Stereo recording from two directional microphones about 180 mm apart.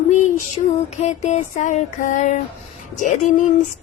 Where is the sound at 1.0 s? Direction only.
40° left (ahead or behind).